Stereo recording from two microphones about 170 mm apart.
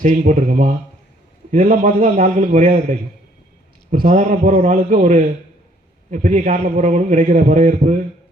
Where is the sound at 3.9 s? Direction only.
50° right (ahead or behind).